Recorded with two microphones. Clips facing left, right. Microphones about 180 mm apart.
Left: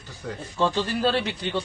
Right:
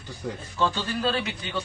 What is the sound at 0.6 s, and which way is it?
Speech, 25° left (ahead or behind).